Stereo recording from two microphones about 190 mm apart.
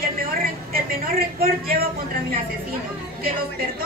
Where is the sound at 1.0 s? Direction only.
50° right (ahead or behind).